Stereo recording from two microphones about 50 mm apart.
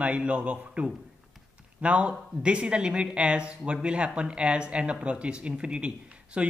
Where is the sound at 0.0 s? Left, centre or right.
Right.